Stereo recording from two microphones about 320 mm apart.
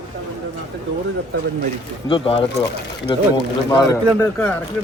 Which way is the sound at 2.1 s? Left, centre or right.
Centre.